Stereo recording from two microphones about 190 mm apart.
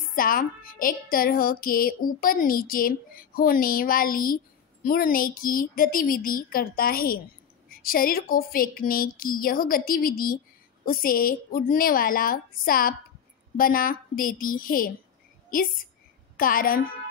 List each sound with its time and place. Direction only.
0.1 s speech: 50° left (ahead or behind)